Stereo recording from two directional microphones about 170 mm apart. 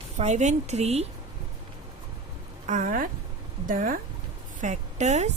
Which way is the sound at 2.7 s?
50° right (ahead or behind).